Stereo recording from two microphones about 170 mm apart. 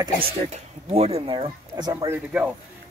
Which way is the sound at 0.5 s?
35° right (ahead or behind).